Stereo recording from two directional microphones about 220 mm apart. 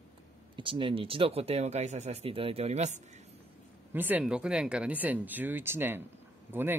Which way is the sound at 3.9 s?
10° right (ahead or behind).